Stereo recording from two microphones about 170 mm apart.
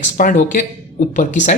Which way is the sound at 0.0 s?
45° left (ahead or behind).